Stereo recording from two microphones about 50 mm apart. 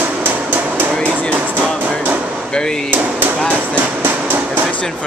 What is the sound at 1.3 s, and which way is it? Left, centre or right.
Music, right.